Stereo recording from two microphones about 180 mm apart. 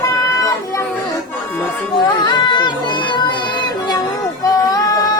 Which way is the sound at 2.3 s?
25° left (ahead or behind).